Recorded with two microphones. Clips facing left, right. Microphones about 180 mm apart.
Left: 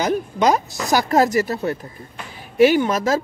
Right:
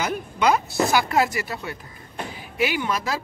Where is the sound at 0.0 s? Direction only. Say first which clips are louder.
Left 4 dB; 40° left (ahead or behind).